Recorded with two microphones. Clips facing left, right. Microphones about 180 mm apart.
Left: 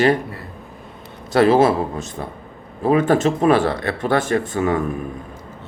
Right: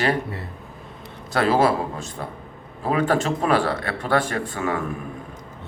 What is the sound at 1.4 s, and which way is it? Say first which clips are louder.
Speech: left 5 dB; 20° left (ahead or behind).